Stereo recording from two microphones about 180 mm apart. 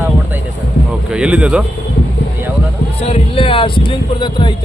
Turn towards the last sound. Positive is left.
turn(degrees=25)  # may be behind; listen again after turning